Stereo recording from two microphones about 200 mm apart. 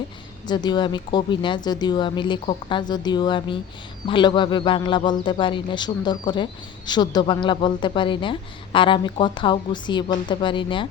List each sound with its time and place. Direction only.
0.4 s a man's voice: 20° left (ahead or behind)